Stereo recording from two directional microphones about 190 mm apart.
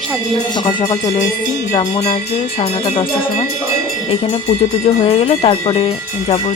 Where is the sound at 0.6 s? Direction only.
25° left (ahead or behind).